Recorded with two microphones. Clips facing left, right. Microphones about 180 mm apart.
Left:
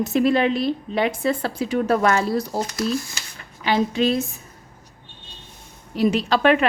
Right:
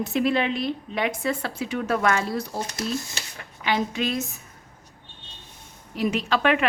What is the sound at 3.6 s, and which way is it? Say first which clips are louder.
Speech: left 5 dB; 30° left (ahead or behind).